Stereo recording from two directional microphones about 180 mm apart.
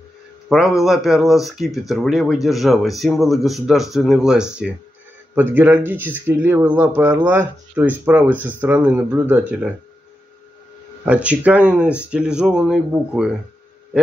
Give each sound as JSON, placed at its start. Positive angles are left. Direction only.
{"t": 0.5, "sound": "speech", "side_deg": 0}
{"t": 11.1, "sound": "speech", "side_deg": -5}